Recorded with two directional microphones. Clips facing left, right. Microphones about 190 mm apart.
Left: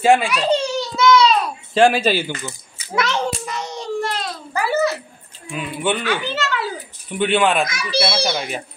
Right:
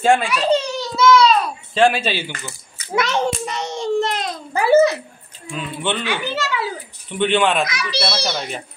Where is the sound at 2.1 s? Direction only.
15° left (ahead or behind).